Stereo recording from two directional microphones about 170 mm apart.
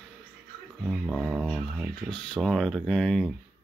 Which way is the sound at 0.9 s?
Centre (ahead or behind).